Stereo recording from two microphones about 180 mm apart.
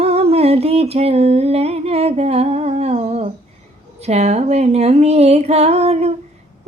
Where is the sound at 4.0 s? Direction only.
35° right (ahead or behind).